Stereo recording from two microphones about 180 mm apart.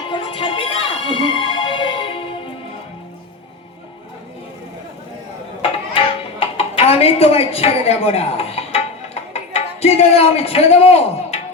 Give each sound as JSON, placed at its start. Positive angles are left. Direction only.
{"t": 0.1, "sound": "music", "side_deg": 30}
{"t": 6.4, "sound": "a woman's voice", "side_deg": 35}